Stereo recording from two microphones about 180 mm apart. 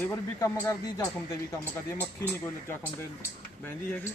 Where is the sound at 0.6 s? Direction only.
20° left (ahead or behind).